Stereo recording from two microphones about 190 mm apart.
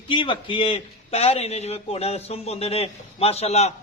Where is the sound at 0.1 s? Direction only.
25° left (ahead or behind).